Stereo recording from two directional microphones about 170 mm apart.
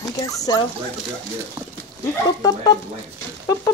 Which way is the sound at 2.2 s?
20° left (ahead or behind).